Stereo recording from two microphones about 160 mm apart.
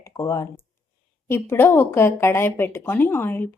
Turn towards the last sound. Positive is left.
turn(degrees=15)  # may be behind; listen again after turning